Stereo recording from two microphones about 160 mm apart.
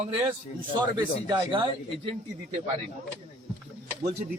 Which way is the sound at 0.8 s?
25° right (ahead or behind).